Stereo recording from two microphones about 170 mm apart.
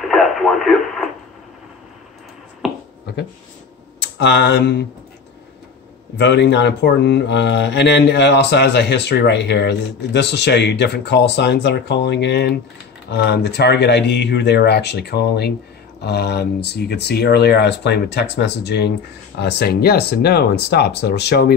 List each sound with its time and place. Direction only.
0.1 s speech: centre (ahead or behind)
2.6 s finger snapping: centre (ahead or behind)
4.0 s speech: 85° left
6.1 s speech: 80° left